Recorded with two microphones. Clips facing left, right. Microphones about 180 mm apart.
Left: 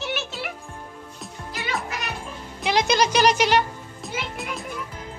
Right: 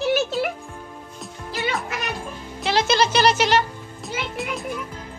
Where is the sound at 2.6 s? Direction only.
15° left (ahead or behind).